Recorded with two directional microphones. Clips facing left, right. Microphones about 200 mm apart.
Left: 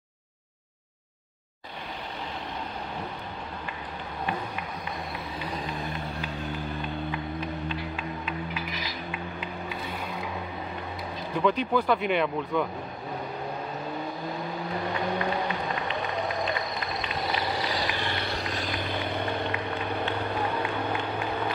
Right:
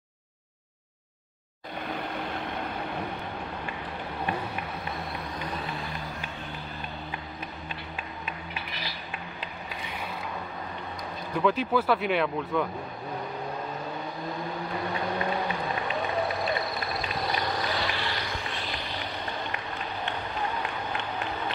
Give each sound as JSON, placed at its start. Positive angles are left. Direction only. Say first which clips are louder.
{"t": 11.3, "sound": "speech", "louder": "even", "side_deg": 0}
{"t": 17.7, "sound": "vehicle", "louder": "left 1 dB", "side_deg": 35}